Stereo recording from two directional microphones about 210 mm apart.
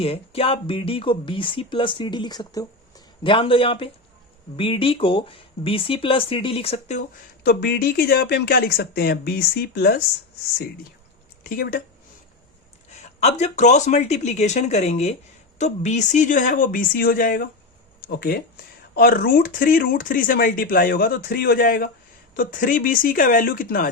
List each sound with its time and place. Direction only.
0.0 s speech: 25° left (ahead or behind)
7.4 s speech: 50° left (ahead or behind)
11.4 s speech: 45° left (ahead or behind)
13.0 s speech: 30° left (ahead or behind)